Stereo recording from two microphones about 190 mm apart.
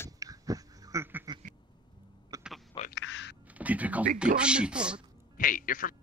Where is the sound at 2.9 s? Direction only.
70° left (ahead or behind).